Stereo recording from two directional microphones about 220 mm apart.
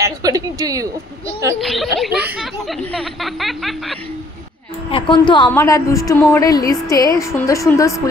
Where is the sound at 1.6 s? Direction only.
Centre (ahead or behind).